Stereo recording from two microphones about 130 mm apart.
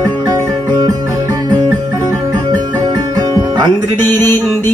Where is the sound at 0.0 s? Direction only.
30° right (ahead or behind).